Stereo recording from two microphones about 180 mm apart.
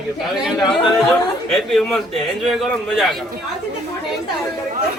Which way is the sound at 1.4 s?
5° left (ahead or behind).